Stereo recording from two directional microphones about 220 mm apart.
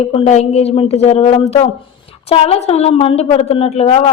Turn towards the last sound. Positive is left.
turn(degrees=25)  # may be behind; listen again after turning